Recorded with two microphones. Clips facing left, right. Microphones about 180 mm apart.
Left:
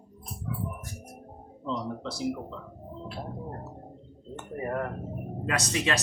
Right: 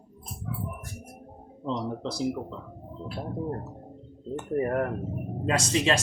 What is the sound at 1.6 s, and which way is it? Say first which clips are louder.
Speech: right 2 dB; 35° right (ahead or behind).